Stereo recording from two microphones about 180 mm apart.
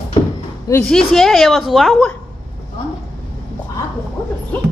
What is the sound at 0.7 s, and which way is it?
A woman's voice, 5° left (ahead or behind).